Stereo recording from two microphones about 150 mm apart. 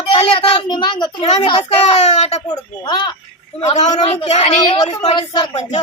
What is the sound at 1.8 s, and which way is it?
Speech, 50° left (ahead or behind).